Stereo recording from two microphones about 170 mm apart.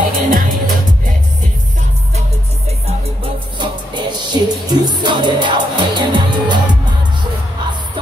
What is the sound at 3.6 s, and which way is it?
Music, 25° right (ahead or behind).